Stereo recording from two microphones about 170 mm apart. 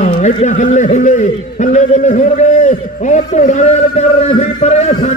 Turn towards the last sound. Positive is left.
turn(degrees=40)  # may be behind; listen again after turning